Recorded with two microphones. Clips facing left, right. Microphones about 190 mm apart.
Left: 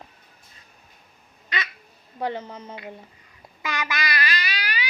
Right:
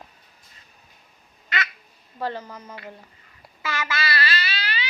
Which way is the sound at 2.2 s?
20° left (ahead or behind).